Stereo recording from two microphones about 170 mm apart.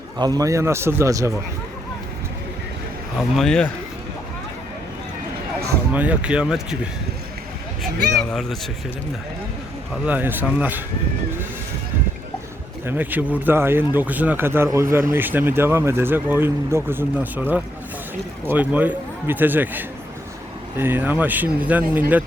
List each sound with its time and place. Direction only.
0.2 s a man's voice: 20° right (ahead or behind)
3.2 s a man's voice: centre (ahead or behind)
5.9 s a man's voice: 10° right (ahead or behind)
8.1 s a man's voice: centre (ahead or behind)
10.1 s a man's voice: 10° right (ahead or behind)
12.8 s a man's voice: 10° right (ahead or behind)